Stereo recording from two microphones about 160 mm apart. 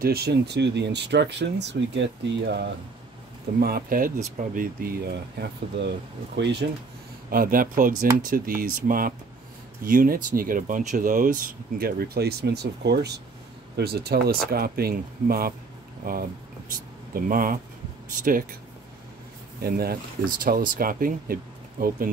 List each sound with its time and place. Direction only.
0.0 s speech: 80° right
3.5 s speech: 70° right (ahead or behind); by 6.6 s 90° right
7.2 s speech: 60° right (ahead or behind)
19.6 s speech: 70° right (ahead or behind)